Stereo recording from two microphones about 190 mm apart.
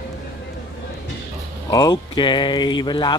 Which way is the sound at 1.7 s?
20° left (ahead or behind).